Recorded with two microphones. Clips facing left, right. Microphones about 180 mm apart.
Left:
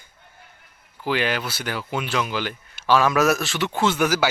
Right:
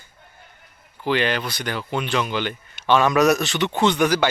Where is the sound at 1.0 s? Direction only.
5° left (ahead or behind).